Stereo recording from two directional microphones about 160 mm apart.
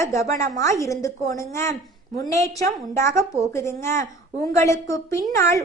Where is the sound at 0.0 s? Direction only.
20° left (ahead or behind).